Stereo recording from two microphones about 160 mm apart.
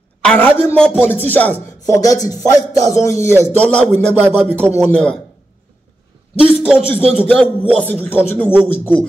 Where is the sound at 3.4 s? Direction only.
10° left (ahead or behind).